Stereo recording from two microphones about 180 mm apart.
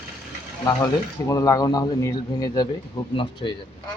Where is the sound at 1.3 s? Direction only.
20° left (ahead or behind).